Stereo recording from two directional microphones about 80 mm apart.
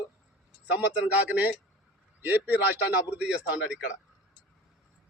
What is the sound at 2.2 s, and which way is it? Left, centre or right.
A man's voice, right.